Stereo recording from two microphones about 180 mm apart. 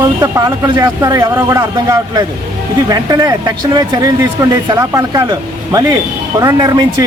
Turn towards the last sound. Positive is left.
turn(degrees=-20)  # may be behind; listen again after turning